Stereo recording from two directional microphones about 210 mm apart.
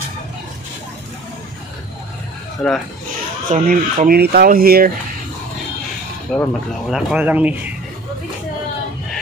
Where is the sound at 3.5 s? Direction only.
40° right (ahead or behind).